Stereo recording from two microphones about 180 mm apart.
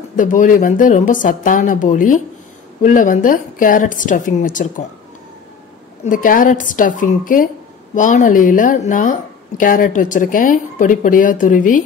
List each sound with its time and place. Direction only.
0.1 s speech: 45° left (ahead or behind)
6.0 s speech: 50° left (ahead or behind)